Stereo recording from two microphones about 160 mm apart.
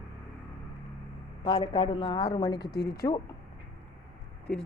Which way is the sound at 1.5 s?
25° left (ahead or behind).